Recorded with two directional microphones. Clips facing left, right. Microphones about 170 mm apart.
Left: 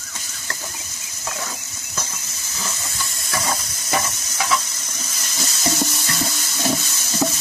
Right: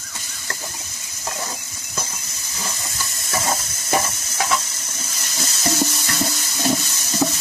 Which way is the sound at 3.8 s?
25° right (ahead or behind).